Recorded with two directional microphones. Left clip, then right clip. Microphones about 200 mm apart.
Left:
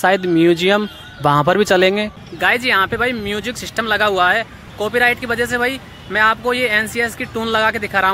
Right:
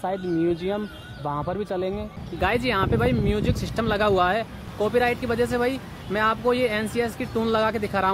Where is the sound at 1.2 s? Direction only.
40° left (ahead or behind).